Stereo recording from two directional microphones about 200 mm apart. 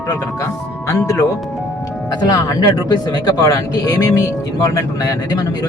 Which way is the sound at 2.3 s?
15° left (ahead or behind).